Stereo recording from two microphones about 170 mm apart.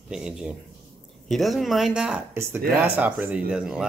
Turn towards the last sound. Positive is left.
turn(degrees=-5)  # may be behind; listen again after turning